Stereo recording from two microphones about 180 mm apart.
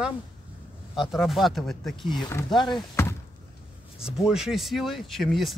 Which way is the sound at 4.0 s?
5° right (ahead or behind).